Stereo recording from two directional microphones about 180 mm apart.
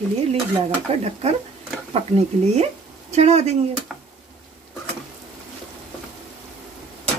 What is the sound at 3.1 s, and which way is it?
Speech, 35° right (ahead or behind).